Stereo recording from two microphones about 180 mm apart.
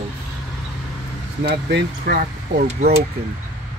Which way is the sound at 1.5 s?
60° right (ahead or behind).